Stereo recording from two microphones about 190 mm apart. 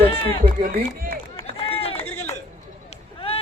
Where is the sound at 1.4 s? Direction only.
30° left (ahead or behind).